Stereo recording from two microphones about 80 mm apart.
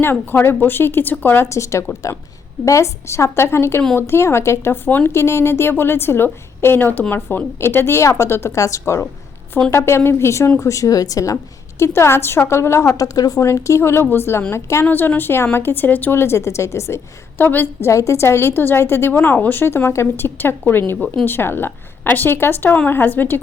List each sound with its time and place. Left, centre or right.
0.0 s a woman's voice: left
1.5 s a woman's voice: left
11.8 s speech: left
13.4 s speech: left
14.8 s a woman's voice: left
17.3 s a woman's voice: left
17.8 s a woman's voice: left